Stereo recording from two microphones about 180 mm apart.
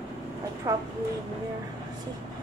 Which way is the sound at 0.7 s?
20° right (ahead or behind).